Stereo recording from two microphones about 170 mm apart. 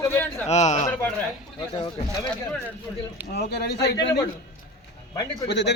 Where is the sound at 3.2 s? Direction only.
75° left (ahead or behind).